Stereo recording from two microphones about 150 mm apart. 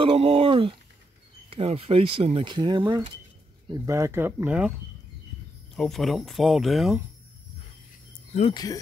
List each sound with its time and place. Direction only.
0.0 s speech: 35° right (ahead or behind)
3.8 s speech: 20° right (ahead or behind)
5.8 s speech: centre (ahead or behind)
8.3 s speech: 45° left (ahead or behind)